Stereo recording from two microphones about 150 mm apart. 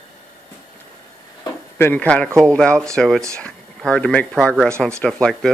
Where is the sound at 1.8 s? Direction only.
10° left (ahead or behind).